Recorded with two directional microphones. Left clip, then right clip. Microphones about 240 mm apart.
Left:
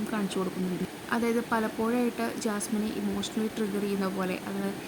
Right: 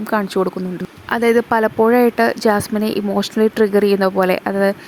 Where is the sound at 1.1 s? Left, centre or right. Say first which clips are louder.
Right 14 dB; right.